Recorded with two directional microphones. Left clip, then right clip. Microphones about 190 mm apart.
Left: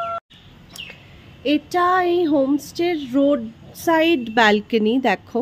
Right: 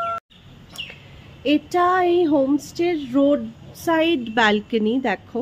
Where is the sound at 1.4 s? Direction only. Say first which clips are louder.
Even; 10° left (ahead or behind).